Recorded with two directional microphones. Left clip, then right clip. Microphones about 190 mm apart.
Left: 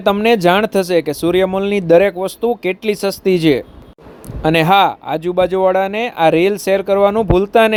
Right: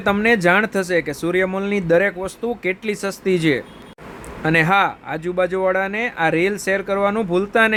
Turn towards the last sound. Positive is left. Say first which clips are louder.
# left 5 dB
turn(degrees=25)  # may be behind; listen again after turning